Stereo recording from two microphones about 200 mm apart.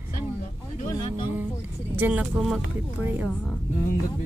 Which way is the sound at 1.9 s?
10° right (ahead or behind).